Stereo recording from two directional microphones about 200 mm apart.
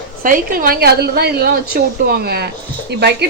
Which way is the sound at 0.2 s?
45° right (ahead or behind).